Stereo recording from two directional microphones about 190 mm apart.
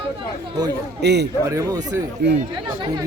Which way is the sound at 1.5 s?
15° right (ahead or behind).